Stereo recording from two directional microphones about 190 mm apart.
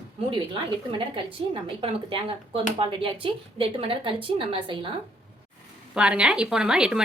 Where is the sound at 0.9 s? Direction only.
25° right (ahead or behind).